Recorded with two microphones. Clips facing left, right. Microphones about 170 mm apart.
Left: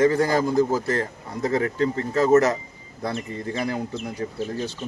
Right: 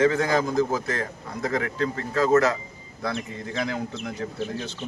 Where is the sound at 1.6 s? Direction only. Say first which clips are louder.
Left 4 dB; 20° left (ahead or behind).